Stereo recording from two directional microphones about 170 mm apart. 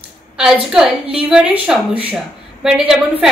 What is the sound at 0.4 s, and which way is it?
A woman's voice, centre (ahead or behind).